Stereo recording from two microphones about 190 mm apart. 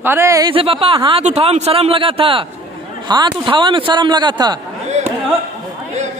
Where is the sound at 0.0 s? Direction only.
10° right (ahead or behind).